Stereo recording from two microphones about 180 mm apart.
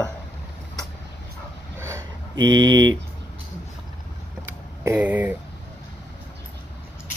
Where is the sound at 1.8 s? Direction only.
15° right (ahead or behind).